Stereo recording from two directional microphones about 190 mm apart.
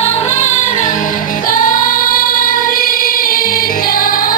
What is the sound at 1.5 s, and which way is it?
Choir, 45° left (ahead or behind).